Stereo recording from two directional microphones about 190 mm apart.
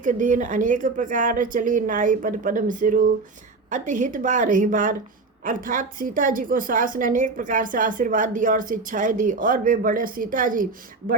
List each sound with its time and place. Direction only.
0.0 s a woman's voice: 40° right (ahead or behind)